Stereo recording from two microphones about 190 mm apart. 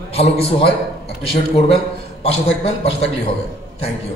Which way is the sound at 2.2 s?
30° left (ahead or behind).